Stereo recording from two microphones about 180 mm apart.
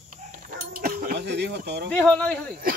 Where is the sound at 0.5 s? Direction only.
55° right (ahead or behind); by 1.8 s 70° right (ahead or behind).